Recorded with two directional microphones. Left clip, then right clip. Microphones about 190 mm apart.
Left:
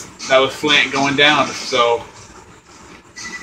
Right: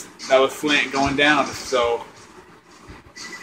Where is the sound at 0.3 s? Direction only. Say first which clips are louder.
Left 4 dB; 15° right (ahead or behind).